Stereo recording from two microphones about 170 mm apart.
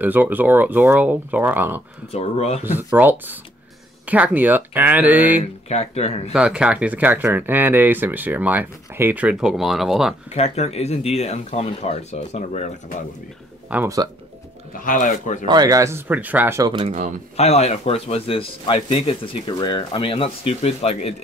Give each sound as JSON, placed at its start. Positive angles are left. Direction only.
{"t": 0.0, "sound": "speech", "side_deg": -10}
{"t": 2.1, "sound": "speech", "side_deg": 40}
{"t": 2.6, "sound": "speech", "side_deg": -10}
{"t": 5.7, "sound": "speech", "side_deg": 40}
{"t": 6.3, "sound": "speech", "side_deg": -5}
{"t": 10.3, "sound": "speech", "side_deg": 40}
{"t": 13.7, "sound": "speech", "side_deg": -10}
{"t": 14.9, "sound": "speech", "side_deg": 50}
{"t": 15.4, "sound": "speech", "side_deg": -25}
{"t": 16.7, "sound": "speech", "side_deg": -40}
{"t": 17.4, "sound": "speech", "side_deg": 40}